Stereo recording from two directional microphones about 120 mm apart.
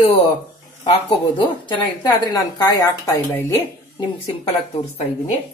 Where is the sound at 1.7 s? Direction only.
35° left (ahead or behind).